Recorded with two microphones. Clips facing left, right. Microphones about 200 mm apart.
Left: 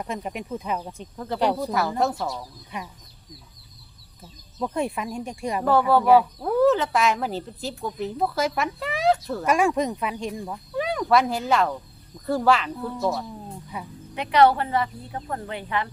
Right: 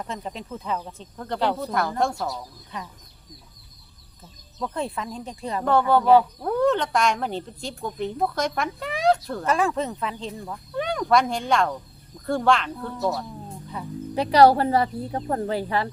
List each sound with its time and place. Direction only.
0.0 s speech: 15° left (ahead or behind)
1.1 s speech: 5° left (ahead or behind)
1.4 s speech: 15° left (ahead or behind)
2.7 s speech: 15° left (ahead or behind)
4.6 s speech: 15° left (ahead or behind)
5.7 s speech: centre (ahead or behind)
9.5 s speech: 15° left (ahead or behind)
10.8 s speech: centre (ahead or behind)
14.2 s speech: 35° right (ahead or behind)